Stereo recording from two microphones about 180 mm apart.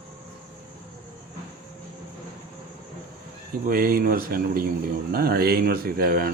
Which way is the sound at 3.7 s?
55° right (ahead or behind).